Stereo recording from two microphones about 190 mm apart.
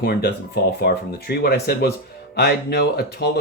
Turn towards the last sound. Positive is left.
turn(degrees=60)  # may be behind; listen again after turning